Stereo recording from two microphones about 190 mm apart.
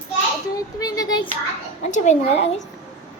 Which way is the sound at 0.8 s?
20° left (ahead or behind).